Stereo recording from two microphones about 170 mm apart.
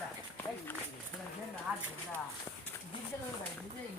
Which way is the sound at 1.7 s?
10° right (ahead or behind).